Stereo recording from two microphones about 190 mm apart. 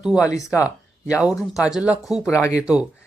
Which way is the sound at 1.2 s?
5° right (ahead or behind).